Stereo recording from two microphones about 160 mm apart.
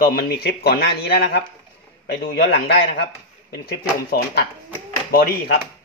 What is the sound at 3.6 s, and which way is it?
Speech, 70° left (ahead or behind).